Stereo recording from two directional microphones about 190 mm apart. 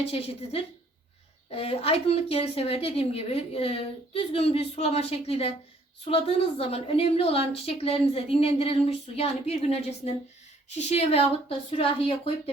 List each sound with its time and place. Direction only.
0.1 s a woman's voice: 30° left (ahead or behind)